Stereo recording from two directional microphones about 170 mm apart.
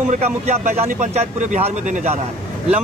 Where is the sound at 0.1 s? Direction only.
45° right (ahead or behind).